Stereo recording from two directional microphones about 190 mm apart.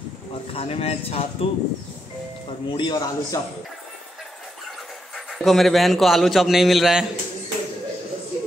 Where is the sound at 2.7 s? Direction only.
25° left (ahead or behind).